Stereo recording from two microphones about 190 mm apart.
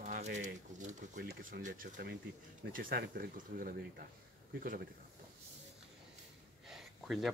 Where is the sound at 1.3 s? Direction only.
50° right (ahead or behind).